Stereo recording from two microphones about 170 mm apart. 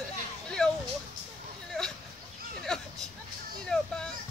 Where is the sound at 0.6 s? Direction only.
Centre (ahead or behind).